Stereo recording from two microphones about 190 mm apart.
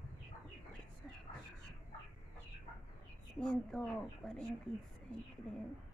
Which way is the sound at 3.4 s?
5° left (ahead or behind).